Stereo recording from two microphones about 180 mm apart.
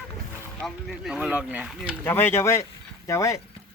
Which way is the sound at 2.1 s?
10° left (ahead or behind).